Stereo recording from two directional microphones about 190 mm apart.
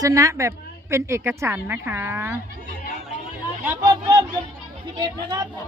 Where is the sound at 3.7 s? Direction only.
20° right (ahead or behind).